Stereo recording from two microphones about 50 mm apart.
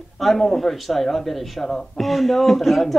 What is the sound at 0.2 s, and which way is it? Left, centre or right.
Speech, centre.